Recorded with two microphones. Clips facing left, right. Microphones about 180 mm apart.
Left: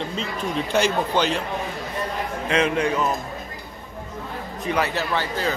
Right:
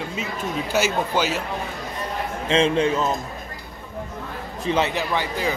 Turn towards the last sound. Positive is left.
turn(degrees=-15)  # may be behind; listen again after turning